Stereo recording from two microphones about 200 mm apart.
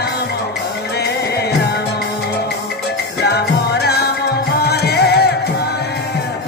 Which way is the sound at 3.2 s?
55° left (ahead or behind).